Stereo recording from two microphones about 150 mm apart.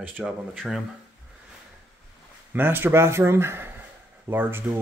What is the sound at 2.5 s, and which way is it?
A man's voice, 15° right (ahead or behind).